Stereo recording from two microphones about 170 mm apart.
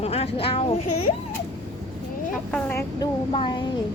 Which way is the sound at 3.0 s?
25° left (ahead or behind).